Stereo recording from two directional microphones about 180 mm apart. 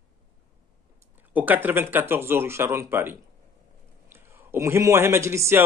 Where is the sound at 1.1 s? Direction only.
10° right (ahead or behind).